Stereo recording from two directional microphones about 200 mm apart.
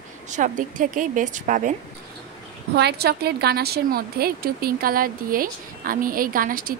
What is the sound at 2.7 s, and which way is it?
A woman's voice, 55° right (ahead or behind).